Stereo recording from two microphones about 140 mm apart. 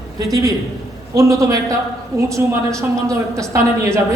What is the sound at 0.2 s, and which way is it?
A woman's voice, 25° right (ahead or behind).